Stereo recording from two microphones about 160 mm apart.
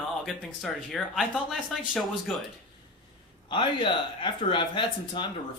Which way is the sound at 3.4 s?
30° left (ahead or behind).